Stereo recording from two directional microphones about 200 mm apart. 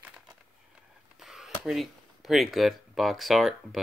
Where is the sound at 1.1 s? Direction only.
Centre (ahead or behind).